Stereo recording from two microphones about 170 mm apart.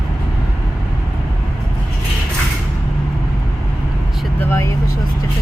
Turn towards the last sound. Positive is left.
turn(degrees=15)  # may be behind; listen again after turning